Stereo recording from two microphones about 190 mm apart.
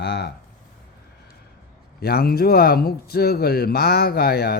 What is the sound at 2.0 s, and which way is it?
Speech, 55° left (ahead or behind).